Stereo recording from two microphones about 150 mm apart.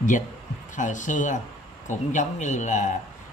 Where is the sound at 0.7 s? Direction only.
55° left (ahead or behind).